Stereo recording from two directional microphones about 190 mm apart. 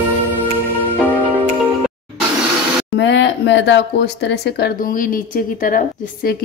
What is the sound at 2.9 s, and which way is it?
Speech, 70° left (ahead or behind).